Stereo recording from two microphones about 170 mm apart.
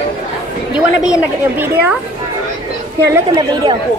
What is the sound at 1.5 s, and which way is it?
Speech, 10° right (ahead or behind).